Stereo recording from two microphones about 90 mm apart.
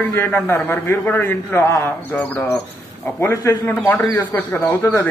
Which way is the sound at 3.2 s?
35° left (ahead or behind).